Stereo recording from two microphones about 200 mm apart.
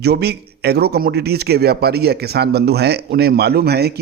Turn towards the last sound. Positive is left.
turn(degrees=-55)  # may be behind; listen again after turning